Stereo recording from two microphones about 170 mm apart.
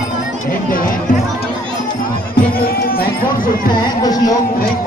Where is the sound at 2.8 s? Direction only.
60° left (ahead or behind).